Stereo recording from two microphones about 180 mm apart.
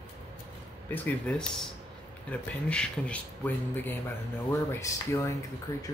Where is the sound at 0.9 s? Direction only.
5° left (ahead or behind).